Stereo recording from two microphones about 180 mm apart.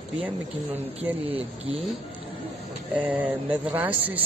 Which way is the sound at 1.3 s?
35° right (ahead or behind).